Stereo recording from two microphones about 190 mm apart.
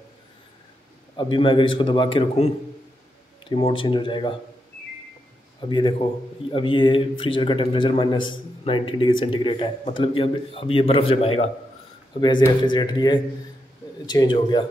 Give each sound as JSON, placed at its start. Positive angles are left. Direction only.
{"t": 1.1, "sound": "a man's voice", "side_deg": 25}
{"t": 5.7, "sound": "a man's voice", "side_deg": 25}